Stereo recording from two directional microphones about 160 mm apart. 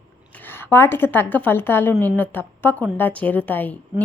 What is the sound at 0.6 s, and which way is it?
A woman's voice, 15° left (ahead or behind).